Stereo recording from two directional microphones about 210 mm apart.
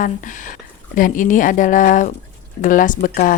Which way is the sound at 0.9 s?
40° left (ahead or behind).